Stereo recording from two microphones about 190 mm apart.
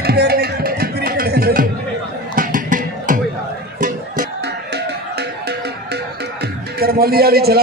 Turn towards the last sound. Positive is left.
turn(degrees=-55)  # may be behind; listen again after turning